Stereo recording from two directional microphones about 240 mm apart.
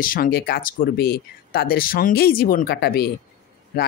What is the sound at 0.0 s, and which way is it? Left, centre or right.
Speech, left.